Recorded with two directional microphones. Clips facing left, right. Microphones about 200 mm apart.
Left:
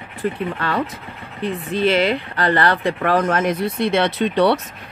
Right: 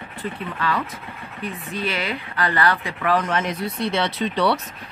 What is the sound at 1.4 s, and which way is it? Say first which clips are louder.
Speech: left 9 dB; 30° left (ahead or behind).